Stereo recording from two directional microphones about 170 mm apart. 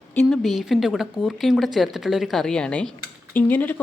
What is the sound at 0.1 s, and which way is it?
A woman's voice, 5° left (ahead or behind).